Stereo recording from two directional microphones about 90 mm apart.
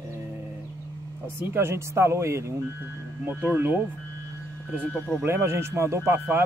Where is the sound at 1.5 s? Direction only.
30° right (ahead or behind).